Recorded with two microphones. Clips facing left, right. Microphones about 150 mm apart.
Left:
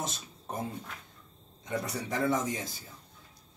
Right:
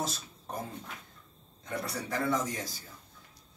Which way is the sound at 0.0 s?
20° left (ahead or behind).